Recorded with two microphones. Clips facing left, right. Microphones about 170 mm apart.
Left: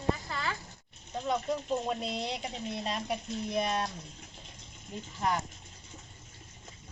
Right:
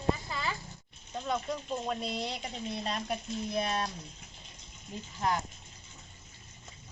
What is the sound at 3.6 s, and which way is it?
Speech, centre (ahead or behind).